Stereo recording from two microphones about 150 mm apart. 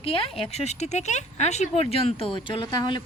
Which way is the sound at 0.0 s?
40° left (ahead or behind).